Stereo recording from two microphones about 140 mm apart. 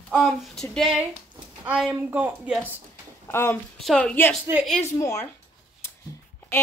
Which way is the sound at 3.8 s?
5° left (ahead or behind).